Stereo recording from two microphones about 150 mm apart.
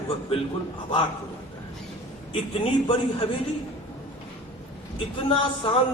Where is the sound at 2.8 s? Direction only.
35° left (ahead or behind).